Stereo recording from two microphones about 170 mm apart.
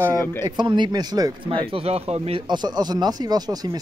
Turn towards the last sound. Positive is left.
turn(degrees=-20)  # may be behind; listen again after turning